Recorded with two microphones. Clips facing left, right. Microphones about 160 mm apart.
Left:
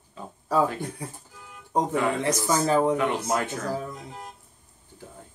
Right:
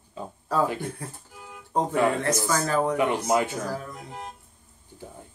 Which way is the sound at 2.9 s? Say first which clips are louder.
Right 2 dB; 15° right (ahead or behind).